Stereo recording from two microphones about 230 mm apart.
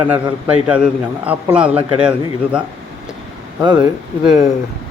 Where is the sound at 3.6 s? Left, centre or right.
Centre.